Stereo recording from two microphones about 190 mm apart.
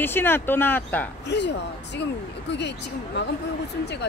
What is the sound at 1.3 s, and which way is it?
Speech, 65° left (ahead or behind).